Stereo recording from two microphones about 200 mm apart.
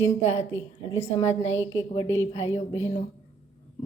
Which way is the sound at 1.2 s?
35° left (ahead or behind).